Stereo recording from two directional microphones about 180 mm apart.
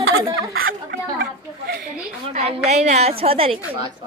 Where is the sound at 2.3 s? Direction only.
35° right (ahead or behind).